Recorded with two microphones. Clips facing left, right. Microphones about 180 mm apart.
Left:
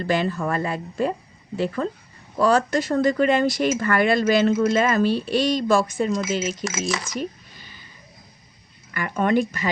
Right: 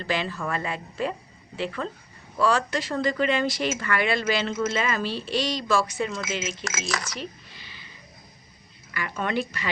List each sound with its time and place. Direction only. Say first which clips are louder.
0.0 s speech: left 6 dB; 45° left (ahead or behind)
6.7 s speech: left 6 dB; centre (ahead or behind)
7.2 s a sound: left 7 dB; 45° left (ahead or behind)
8.9 s speech: left 7 dB; 50° left (ahead or behind)